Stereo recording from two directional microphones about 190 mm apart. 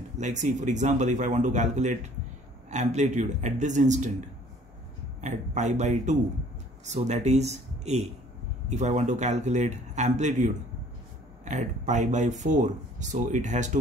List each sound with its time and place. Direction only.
0.2 s speech: 40° right (ahead or behind)
5.2 s speech: 40° right (ahead or behind)